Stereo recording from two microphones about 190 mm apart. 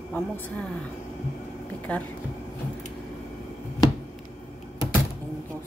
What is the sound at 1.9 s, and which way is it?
Speech, 5° left (ahead or behind).